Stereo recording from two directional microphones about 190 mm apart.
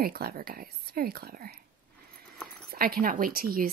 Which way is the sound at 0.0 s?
55° right (ahead or behind).